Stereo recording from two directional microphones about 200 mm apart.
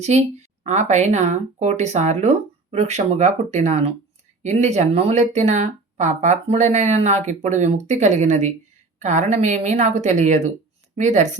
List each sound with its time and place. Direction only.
0.1 s speech: 35° right (ahead or behind)